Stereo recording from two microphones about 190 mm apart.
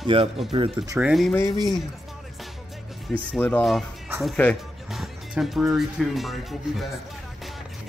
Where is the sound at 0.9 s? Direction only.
Centre (ahead or behind).